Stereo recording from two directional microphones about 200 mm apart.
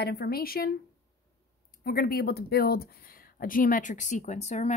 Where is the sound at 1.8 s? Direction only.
50° left (ahead or behind).